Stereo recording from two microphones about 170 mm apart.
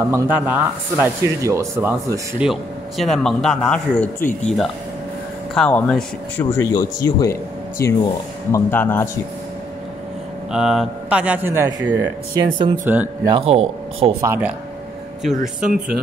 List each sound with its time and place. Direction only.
0.1 s speech: 15° right (ahead or behind)
2.3 s speech: 5° right (ahead or behind)
4.2 s speech: 45° left (ahead or behind)
5.5 s speech: 5° left (ahead or behind)
10.5 s speech: 5° right (ahead or behind)
13.2 s speech: 30° right (ahead or behind)
14.2 s speech: 15° right (ahead or behind)
15.2 s speech: centre (ahead or behind)